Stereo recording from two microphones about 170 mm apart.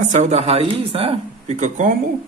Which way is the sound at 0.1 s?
40° right (ahead or behind).